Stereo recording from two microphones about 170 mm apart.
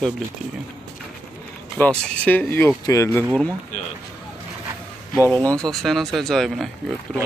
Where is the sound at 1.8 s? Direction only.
10° left (ahead or behind).